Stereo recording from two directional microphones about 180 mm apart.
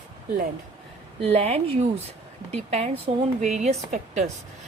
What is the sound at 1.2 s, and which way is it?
A woman's voice, 35° right (ahead or behind).